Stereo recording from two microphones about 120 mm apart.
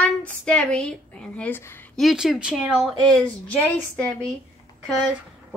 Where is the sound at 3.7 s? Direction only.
15° left (ahead or behind).